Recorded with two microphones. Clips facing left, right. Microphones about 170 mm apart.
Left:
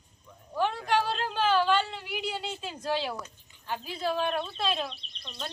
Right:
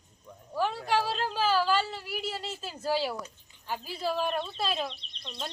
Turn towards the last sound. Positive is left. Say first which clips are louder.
# right 1 dB
turn(degrees=0)  # may be behind; listen again after turning